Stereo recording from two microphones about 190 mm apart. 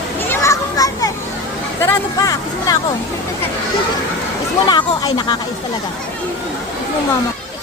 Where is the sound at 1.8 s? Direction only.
15° left (ahead or behind).